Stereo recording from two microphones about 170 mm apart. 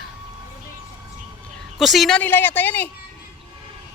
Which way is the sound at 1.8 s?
Centre (ahead or behind).